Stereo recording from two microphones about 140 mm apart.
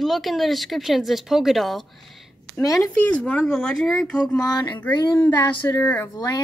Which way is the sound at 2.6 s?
25° left (ahead or behind).